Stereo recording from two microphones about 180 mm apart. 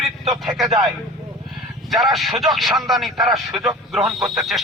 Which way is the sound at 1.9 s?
Centre (ahead or behind).